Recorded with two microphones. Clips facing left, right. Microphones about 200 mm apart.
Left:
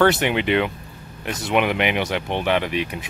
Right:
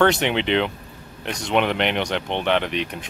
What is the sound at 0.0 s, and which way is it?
Speech, 5° left (ahead or behind).